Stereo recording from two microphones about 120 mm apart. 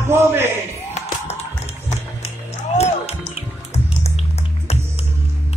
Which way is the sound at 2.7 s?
60° left (ahead or behind).